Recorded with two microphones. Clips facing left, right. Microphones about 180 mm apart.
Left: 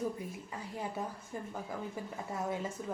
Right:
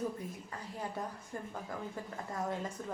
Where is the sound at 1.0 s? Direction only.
5° left (ahead or behind).